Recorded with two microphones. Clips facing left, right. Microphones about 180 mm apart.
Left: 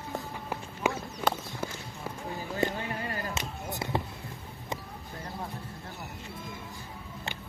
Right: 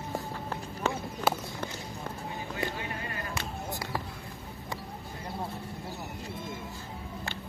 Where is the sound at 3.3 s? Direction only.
20° left (ahead or behind).